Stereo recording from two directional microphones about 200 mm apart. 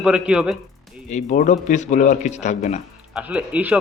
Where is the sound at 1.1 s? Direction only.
35° left (ahead or behind).